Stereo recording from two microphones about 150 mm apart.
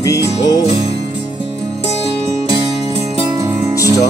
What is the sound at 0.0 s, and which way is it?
Music, 25° left (ahead or behind).